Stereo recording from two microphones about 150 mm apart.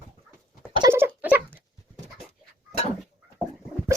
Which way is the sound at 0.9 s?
15° right (ahead or behind).